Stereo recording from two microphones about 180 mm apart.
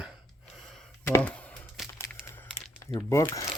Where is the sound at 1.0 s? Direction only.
10° left (ahead or behind).